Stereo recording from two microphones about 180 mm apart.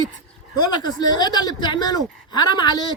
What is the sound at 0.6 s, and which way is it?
Speech, 25° left (ahead or behind).